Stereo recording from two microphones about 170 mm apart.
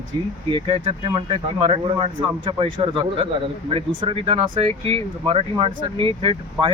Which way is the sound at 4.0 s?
30° right (ahead or behind).